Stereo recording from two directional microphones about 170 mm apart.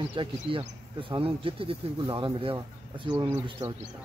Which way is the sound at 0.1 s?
30° right (ahead or behind).